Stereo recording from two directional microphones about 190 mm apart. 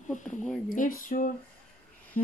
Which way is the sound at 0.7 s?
45° left (ahead or behind).